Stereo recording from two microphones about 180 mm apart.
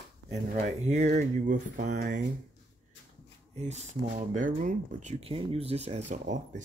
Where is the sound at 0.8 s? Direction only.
40° right (ahead or behind).